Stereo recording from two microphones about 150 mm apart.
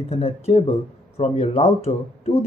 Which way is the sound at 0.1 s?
45° left (ahead or behind).